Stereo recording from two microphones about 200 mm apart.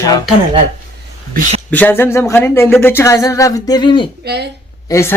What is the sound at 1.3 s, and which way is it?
Speech, 40° right (ahead or behind).